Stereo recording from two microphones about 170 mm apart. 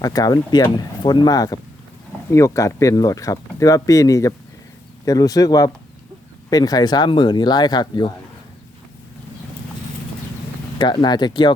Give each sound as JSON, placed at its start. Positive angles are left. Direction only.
{"t": 0.0, "sound": "speech", "side_deg": 20}
{"t": 10.8, "sound": "speech", "side_deg": 25}